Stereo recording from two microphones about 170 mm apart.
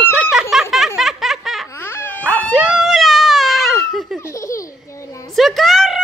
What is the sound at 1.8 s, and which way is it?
Dog, 15° left (ahead or behind).